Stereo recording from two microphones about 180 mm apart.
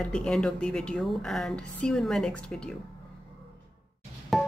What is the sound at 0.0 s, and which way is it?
A woman's voice, 5° left (ahead or behind).